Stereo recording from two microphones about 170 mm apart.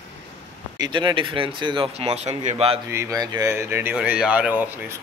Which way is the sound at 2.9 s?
15° right (ahead or behind).